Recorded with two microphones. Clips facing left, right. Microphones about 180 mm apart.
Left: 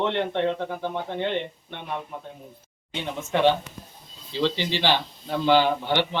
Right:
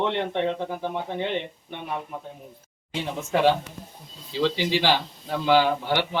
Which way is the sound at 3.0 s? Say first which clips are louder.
Even; 5° right (ahead or behind).